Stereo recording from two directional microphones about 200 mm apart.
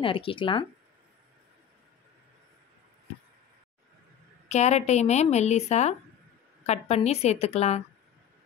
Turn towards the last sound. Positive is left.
turn(degrees=35)  # may be behind; listen again after turning